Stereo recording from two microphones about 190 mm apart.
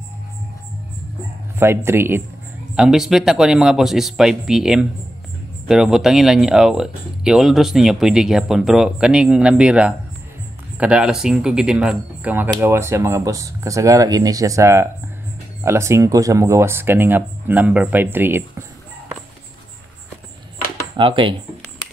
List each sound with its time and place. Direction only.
1.6 s speech: 15° right (ahead or behind)
20.9 s speech: 25° right (ahead or behind)